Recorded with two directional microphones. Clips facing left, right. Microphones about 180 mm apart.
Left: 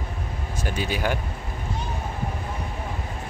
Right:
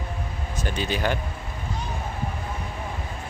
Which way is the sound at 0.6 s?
10° left (ahead or behind).